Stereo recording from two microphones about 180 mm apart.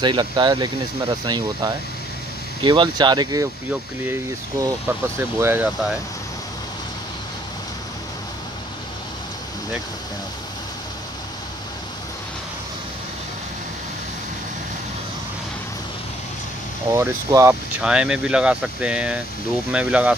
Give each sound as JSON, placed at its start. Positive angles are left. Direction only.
{"t": 0.0, "sound": "speech", "side_deg": -25}
{"t": 16.9, "sound": "speech", "side_deg": -15}
{"t": 17.8, "sound": "speech", "side_deg": -5}